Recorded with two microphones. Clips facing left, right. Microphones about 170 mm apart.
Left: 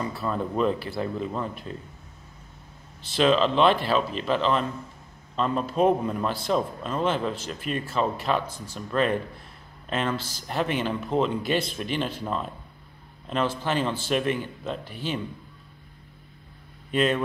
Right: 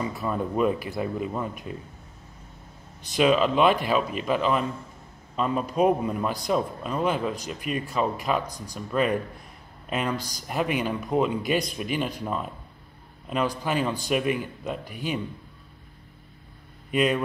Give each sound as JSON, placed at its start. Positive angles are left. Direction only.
{"t": 0.0, "sound": "a man's voice", "side_deg": -15}
{"t": 3.2, "sound": "a man's voice", "side_deg": -10}
{"t": 16.9, "sound": "a man's voice", "side_deg": -10}